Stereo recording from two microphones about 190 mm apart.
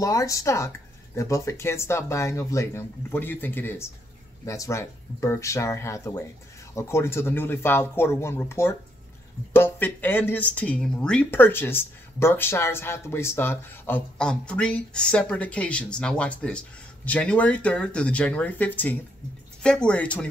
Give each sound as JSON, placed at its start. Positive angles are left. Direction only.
{"t": 0.0, "sound": "speech", "side_deg": 15}